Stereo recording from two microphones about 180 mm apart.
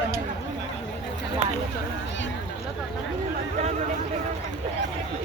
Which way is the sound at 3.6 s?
40° right (ahead or behind).